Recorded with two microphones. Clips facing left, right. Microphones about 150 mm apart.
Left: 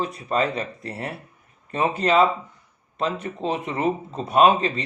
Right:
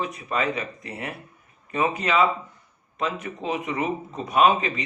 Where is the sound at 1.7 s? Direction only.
30° left (ahead or behind).